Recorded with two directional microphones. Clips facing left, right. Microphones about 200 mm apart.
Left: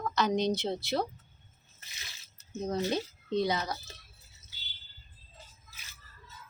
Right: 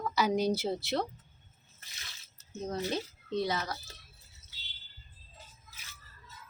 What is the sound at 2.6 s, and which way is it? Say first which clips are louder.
Speech: left 3 dB; 15° left (ahead or behind).